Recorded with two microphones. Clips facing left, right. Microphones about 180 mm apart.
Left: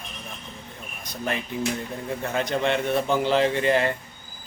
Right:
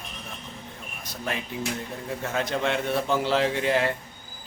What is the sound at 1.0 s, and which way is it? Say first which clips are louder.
A man's voice: left 3 dB; centre (ahead or behind).